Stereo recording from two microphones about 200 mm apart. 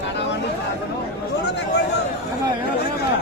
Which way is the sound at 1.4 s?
60° left (ahead or behind).